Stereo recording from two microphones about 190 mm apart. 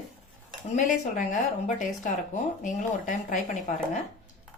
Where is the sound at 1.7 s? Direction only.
40° left (ahead or behind).